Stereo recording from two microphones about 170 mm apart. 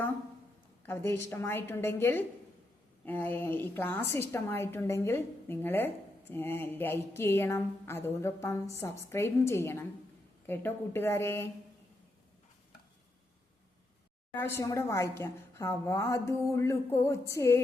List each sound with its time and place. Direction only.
0.9 s a woman's voice: 15° left (ahead or behind)
14.3 s a woman's voice: 15° left (ahead or behind)